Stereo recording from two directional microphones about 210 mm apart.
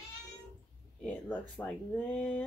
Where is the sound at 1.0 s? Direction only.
5° left (ahead or behind).